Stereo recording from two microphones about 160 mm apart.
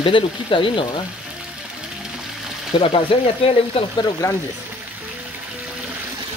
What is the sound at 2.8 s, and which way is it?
Speech, 35° left (ahead or behind).